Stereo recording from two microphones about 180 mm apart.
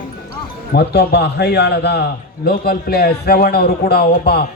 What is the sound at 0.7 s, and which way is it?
A man's voice, 65° left (ahead or behind).